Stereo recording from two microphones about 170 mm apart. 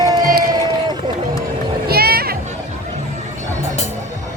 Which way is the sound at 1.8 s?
65° right (ahead or behind).